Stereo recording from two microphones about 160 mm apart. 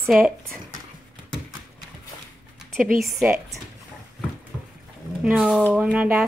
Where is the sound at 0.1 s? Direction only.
Centre (ahead or behind).